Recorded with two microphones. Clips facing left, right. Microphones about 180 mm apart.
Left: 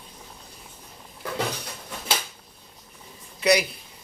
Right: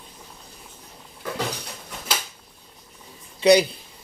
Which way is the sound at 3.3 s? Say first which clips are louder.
Right 5 dB; 30° right (ahead or behind).